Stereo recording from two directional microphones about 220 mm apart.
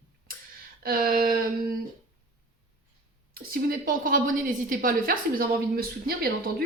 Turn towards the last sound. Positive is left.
turn(degrees=-45)  # may be behind; listen again after turning